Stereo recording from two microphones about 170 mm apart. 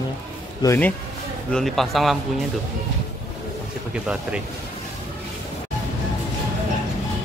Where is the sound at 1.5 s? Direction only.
Centre (ahead or behind).